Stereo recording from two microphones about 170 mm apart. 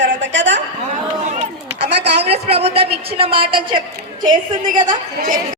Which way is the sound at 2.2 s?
35° right (ahead or behind).